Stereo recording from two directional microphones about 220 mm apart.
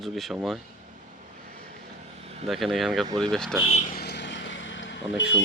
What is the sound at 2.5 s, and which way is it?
Speech, centre (ahead or behind).